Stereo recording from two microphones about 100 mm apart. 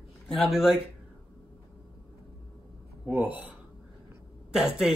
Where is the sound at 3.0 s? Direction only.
15° right (ahead or behind).